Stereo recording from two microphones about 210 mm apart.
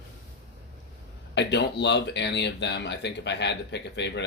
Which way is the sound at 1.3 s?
55° left (ahead or behind).